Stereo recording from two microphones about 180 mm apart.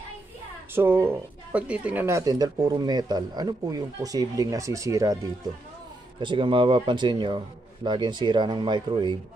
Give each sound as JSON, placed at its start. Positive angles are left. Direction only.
{"t": 0.7, "sound": "speech", "side_deg": -15}